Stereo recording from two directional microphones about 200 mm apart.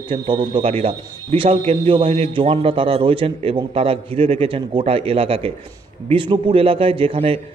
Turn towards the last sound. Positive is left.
turn(degrees=-30)  # may be behind; listen again after turning